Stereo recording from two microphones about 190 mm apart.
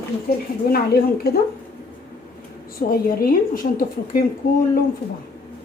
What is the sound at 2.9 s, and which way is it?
A woman's voice, 50° left (ahead or behind).